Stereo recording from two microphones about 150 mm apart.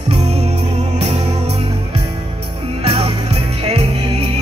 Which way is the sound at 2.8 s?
40° right (ahead or behind).